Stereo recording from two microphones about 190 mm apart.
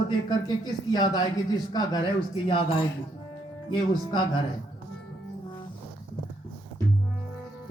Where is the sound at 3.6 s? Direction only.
25° left (ahead or behind).